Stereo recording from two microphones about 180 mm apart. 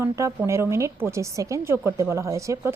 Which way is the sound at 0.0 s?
15° right (ahead or behind).